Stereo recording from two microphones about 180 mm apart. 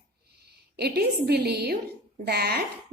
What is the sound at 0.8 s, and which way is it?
Speech, 60° right (ahead or behind).